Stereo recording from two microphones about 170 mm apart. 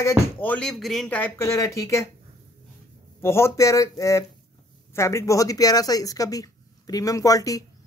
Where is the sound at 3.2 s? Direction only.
15° left (ahead or behind).